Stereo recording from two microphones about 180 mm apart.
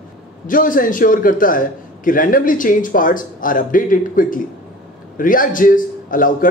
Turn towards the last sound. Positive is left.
turn(degrees=50)  # may be behind; listen again after turning